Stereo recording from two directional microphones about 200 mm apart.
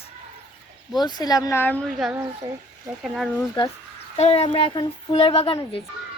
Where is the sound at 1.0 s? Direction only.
20° left (ahead or behind).